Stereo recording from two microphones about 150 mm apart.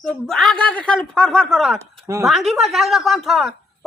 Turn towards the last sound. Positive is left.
turn(degrees=0)  # may be behind; listen again after turning